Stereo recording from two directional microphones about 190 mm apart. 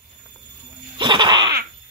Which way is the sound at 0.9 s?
25° right (ahead or behind).